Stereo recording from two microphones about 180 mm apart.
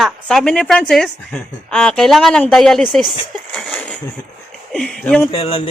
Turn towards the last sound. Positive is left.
turn(degrees=30)  # may be behind; listen again after turning